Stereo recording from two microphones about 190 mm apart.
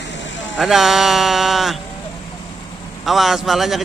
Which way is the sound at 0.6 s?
Centre (ahead or behind).